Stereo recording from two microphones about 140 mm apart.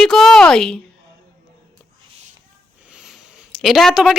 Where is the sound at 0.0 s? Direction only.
Centre (ahead or behind).